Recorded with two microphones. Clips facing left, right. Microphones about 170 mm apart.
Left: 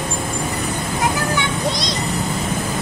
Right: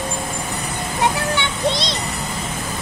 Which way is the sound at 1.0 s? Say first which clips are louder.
Right 1 dB; 25° right (ahead or behind).